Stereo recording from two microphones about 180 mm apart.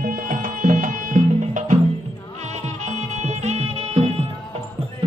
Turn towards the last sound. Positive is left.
turn(degrees=-35)  # may be behind; listen again after turning